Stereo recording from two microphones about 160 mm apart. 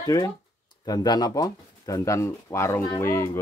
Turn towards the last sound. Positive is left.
turn(degrees=20)  # may be behind; listen again after turning